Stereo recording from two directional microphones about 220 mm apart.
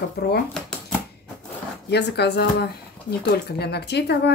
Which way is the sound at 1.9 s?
50° left (ahead or behind).